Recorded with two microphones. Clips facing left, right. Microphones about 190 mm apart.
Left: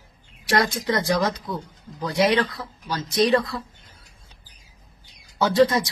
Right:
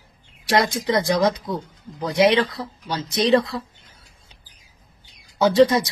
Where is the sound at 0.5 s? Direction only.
20° right (ahead or behind).